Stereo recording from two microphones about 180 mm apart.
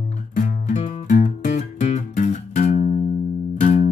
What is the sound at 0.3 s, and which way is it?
Music, 45° left (ahead or behind).